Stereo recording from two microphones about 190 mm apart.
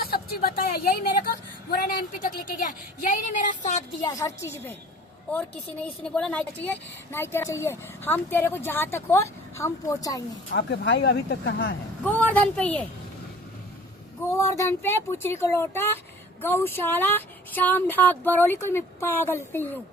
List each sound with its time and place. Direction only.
0.0 s speech: 55° left (ahead or behind)
4.0 s speech: 15° left (ahead or behind)
10.5 s speech: 65° left (ahead or behind)
12.0 s speech: 10° left (ahead or behind)
14.3 s speech: 15° left (ahead or behind)